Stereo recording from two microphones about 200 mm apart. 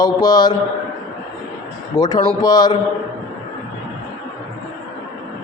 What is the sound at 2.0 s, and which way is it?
Speech, 20° left (ahead or behind).